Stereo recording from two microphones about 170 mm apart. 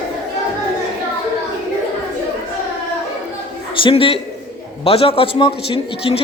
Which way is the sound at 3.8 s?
35° left (ahead or behind).